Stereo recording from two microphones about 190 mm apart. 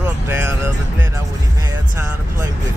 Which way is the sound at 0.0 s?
10° right (ahead or behind).